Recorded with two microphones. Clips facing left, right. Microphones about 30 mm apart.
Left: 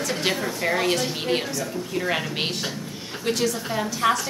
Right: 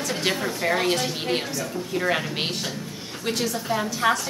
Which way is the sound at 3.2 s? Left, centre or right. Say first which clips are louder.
Left 2 dB; centre.